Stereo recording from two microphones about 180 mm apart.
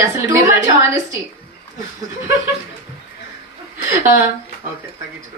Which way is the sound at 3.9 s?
15° right (ahead or behind).